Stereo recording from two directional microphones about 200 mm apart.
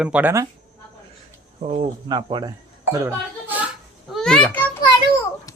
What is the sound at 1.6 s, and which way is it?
Speech, 35° right (ahead or behind).